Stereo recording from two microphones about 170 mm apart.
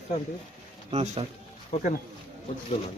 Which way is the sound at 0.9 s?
35° right (ahead or behind).